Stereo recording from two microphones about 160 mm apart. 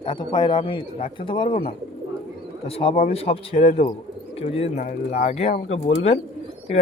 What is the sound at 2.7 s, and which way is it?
Speech, 35° left (ahead or behind).